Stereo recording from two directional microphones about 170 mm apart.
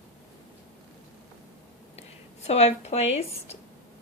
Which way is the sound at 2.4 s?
40° left (ahead or behind).